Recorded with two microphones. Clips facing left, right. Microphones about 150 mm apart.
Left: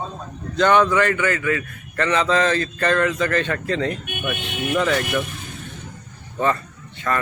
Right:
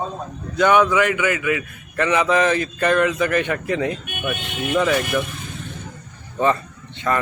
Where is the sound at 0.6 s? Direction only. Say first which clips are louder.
Right 1 dB; 10° right (ahead or behind).